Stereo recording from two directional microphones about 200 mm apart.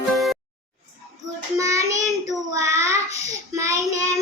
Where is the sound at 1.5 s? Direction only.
15° right (ahead or behind).